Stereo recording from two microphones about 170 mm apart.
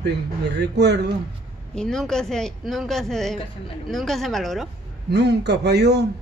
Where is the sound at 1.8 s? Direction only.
5° left (ahead or behind).